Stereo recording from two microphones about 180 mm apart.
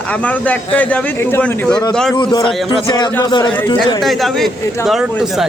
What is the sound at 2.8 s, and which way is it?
Speech, 25° left (ahead or behind).